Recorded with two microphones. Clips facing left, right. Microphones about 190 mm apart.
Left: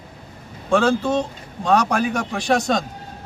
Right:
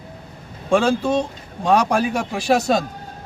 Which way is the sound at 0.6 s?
10° right (ahead or behind).